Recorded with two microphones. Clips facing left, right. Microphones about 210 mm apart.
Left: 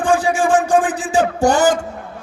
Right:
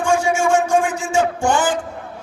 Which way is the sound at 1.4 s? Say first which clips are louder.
Left 4 dB; 40° left (ahead or behind).